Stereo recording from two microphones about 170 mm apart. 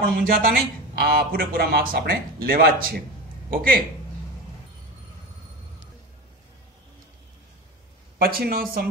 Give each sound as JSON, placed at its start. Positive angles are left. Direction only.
{"t": 0.0, "sound": "speech", "side_deg": -55}
{"t": 8.2, "sound": "speech", "side_deg": -60}